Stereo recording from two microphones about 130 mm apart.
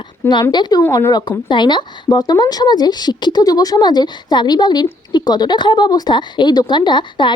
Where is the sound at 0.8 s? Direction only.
20° left (ahead or behind).